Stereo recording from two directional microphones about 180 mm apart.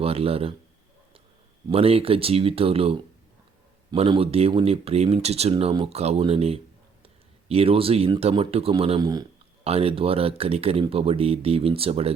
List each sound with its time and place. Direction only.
0.0 s a man's voice: 30° right (ahead or behind)
1.6 s speech: 35° right (ahead or behind)
3.9 s speech: 30° right (ahead or behind)